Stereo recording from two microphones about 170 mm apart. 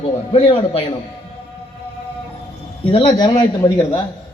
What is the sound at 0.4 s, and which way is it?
Speech, 30° left (ahead or behind).